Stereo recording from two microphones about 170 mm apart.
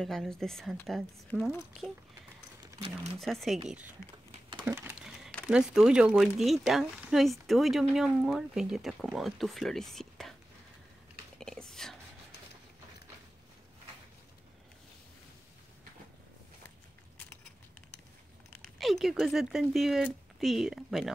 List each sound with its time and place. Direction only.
0.0 s speech: 5° left (ahead or behind)
3.2 s speech: centre (ahead or behind)
4.3 s typing: 30° right (ahead or behind)
4.6 s a sound: 10° right (ahead or behind)
5.5 s speech: 5° right (ahead or behind)
11.3 s whispering: 5° left (ahead or behind)
18.6 s speech: centre (ahead or behind)